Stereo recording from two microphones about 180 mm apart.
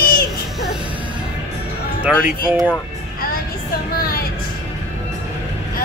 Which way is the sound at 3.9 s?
55° left (ahead or behind).